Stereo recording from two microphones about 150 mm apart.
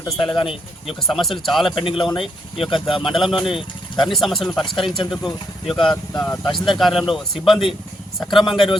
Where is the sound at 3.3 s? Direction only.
Centre (ahead or behind).